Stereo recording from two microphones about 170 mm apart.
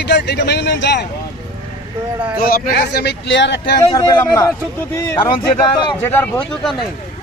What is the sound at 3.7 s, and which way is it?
A man's voice, 25° left (ahead or behind).